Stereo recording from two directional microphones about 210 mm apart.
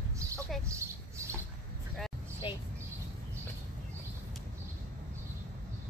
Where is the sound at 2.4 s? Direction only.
20° left (ahead or behind).